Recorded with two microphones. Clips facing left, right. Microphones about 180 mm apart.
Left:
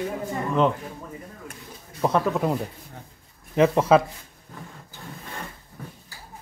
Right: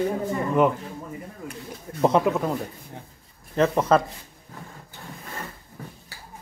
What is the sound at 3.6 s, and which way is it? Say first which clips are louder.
Chuckle: left 2 dB; 5° left (ahead or behind).